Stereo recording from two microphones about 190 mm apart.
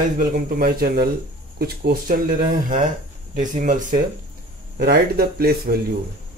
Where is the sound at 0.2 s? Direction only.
50° right (ahead or behind).